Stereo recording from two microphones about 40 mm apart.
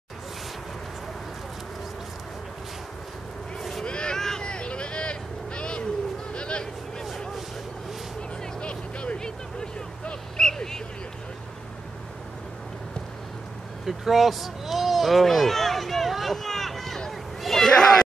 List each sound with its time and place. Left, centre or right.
3.8 s vehicle: left
8.5 s vehicle: left
10.3 s vehicle: centre
13.8 s a sound: centre